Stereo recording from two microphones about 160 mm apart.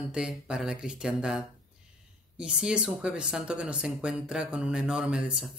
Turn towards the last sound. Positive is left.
turn(degrees=-5)  # may be behind; listen again after turning